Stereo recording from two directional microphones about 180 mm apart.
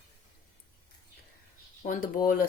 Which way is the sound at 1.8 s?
50° left (ahead or behind).